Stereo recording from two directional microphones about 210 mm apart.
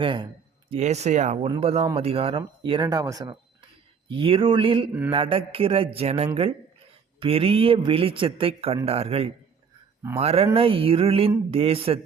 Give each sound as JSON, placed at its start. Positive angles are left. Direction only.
{"t": 0.0, "sound": "speech", "side_deg": -25}